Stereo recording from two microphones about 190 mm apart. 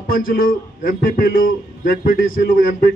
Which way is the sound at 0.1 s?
50° left (ahead or behind).